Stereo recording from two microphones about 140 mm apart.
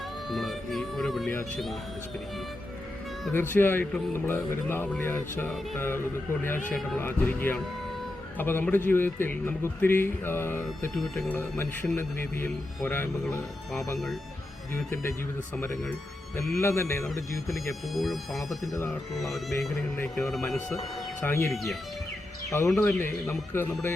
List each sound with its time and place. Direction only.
0.3 s speech: centre (ahead or behind)
3.3 s a man's voice: 15° left (ahead or behind)
10.9 s speech: centre (ahead or behind)
11.3 s a man's voice: 20° left (ahead or behind)
14.7 s speech: 20° left (ahead or behind)
16.6 s a man's voice: 20° left (ahead or behind)
17.9 s speech: centre (ahead or behind)
18.7 s speech: 25° left (ahead or behind)
20.1 s speech: centre (ahead or behind)
21.2 s a man's voice: 15° left (ahead or behind)
21.5 s speech: centre (ahead or behind)
22.4 s a man's voice: 20° left (ahead or behind)